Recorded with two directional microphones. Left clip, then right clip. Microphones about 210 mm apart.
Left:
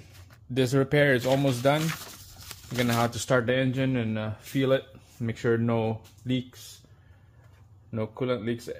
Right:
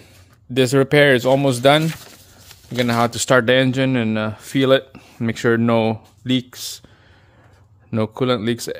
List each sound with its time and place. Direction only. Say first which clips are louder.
0.5 s speech: right 9 dB; 40° right (ahead or behind)
2.8 s speech: right 8 dB; 40° right (ahead or behind)
7.9 s speech: right 10 dB; 60° right (ahead or behind)